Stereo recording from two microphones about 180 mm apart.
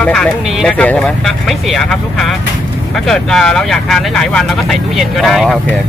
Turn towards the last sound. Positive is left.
turn(degrees=0)  # may be behind; listen again after turning